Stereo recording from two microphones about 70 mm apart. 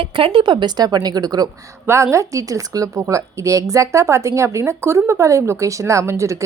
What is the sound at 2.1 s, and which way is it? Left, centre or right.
A woman's voice, right.